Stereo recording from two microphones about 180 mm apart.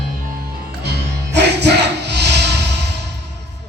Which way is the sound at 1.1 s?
70° right (ahead or behind).